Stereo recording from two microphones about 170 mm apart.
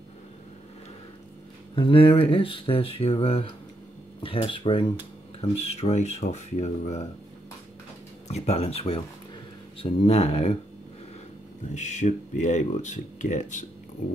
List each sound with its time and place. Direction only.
1.8 s speech: 30° left (ahead or behind)
5.6 s speech: 40° left (ahead or behind)
8.3 s speech: 40° left (ahead or behind)
11.7 s speech: 45° left (ahead or behind)